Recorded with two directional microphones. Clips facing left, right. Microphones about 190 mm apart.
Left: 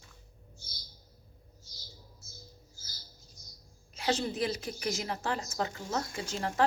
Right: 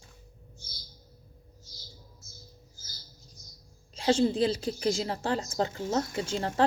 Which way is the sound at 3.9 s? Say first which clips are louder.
Right 7 dB; 30° right (ahead or behind).